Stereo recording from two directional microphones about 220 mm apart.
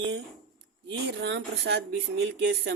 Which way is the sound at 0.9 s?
55° right (ahead or behind).